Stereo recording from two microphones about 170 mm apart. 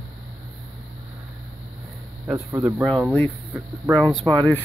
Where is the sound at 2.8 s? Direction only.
Centre (ahead or behind).